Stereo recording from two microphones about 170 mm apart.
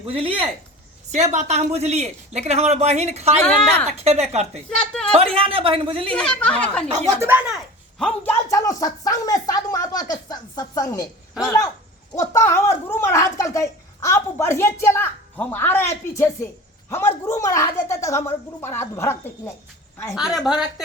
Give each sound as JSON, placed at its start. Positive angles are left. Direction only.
{"t": 0.0, "sound": "a man's voice", "side_deg": -35}
{"t": 1.1, "sound": "a man's voice", "side_deg": -45}
{"t": 3.4, "sound": "speech", "side_deg": 5}
{"t": 3.8, "sound": "a man's voice", "side_deg": -40}
{"t": 4.8, "sound": "speech", "side_deg": 5}
{"t": 5.1, "sound": "a man's voice", "side_deg": -35}
{"t": 6.1, "sound": "speech", "side_deg": 5}
{"t": 7.2, "sound": "speech", "side_deg": -10}
{"t": 7.9, "sound": "a woman's voice", "side_deg": 5}
{"t": 20.1, "sound": "speech", "side_deg": -5}